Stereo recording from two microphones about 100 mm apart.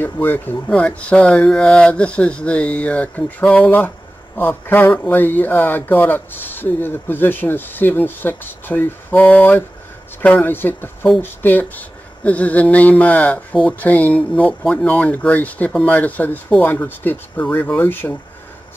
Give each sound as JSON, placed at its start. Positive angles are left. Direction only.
{"t": 0.0, "sound": "speech", "side_deg": 20}